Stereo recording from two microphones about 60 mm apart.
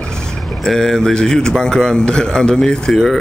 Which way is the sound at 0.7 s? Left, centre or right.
Centre.